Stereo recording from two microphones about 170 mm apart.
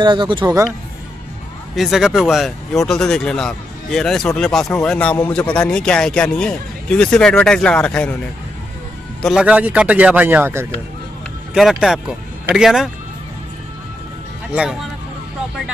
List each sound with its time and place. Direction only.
0.0 s speech: 25° right (ahead or behind)
1.8 s speech: centre (ahead or behind)
9.2 s speech: 5° right (ahead or behind)
11.5 s speech: centre (ahead or behind)
14.5 s speech: 5° right (ahead or behind)